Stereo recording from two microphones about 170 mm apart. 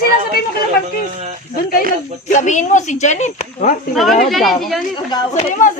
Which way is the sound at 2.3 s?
45° left (ahead or behind).